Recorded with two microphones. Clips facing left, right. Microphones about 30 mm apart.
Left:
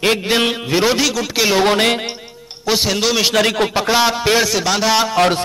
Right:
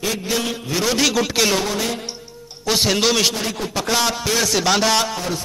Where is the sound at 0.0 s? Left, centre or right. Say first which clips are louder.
Left 7 dB; left.